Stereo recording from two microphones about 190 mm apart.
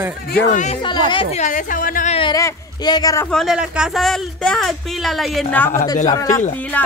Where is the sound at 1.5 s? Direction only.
45° left (ahead or behind).